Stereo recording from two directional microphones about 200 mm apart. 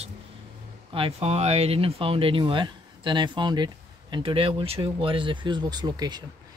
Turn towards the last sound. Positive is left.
turn(degrees=-20)  # may be behind; listen again after turning